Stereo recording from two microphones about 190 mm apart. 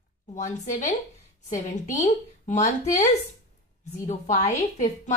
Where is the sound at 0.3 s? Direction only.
40° left (ahead or behind).